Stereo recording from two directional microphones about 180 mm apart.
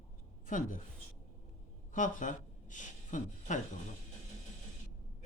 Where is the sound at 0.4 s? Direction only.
45° left (ahead or behind).